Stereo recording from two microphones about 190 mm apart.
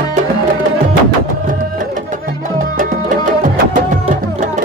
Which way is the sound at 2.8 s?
45° right (ahead or behind).